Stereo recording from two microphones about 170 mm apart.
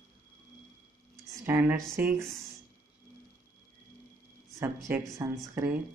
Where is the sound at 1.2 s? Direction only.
15° right (ahead or behind).